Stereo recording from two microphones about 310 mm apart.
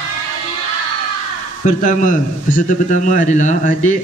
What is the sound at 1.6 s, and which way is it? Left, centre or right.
A man's voice, left.